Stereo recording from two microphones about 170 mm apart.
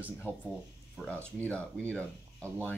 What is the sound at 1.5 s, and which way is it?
Speech, 5° left (ahead or behind).